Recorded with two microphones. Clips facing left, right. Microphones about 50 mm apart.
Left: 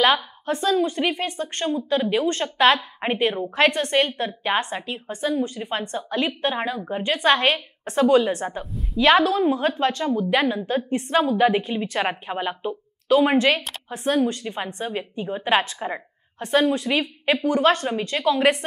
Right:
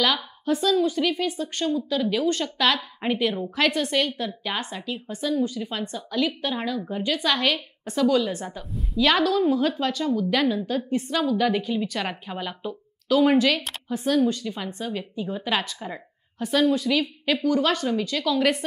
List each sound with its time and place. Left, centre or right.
0.0 s a woman's voice: left
9.0 s a woman's voice: left